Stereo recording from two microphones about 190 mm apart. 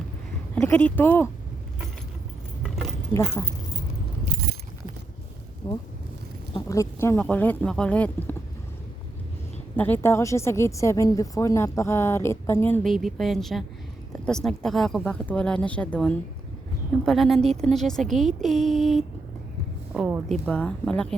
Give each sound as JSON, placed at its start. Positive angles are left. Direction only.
{"t": 0.5, "sound": "a woman's voice", "side_deg": 5}
{"t": 2.6, "sound": "keys jangling", "side_deg": 0}
{"t": 5.6, "sound": "a woman's voice", "side_deg": 25}
{"t": 9.7, "sound": "a woman's voice", "side_deg": 10}
{"t": 12.9, "sound": "speech", "side_deg": 0}
{"t": 18.3, "sound": "mantra", "side_deg": 0}
{"t": 19.9, "sound": "a sound", "side_deg": -5}
{"t": 20.2, "sound": "speech", "side_deg": 5}